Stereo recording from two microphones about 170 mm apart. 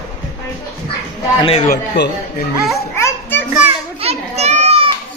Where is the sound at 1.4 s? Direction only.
35° left (ahead or behind).